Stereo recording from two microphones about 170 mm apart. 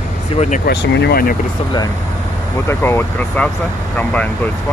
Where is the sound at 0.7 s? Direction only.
75° left (ahead or behind).